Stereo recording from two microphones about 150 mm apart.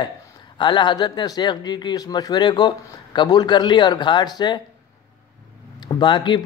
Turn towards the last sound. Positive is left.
turn(degrees=30)  # may be behind; listen again after turning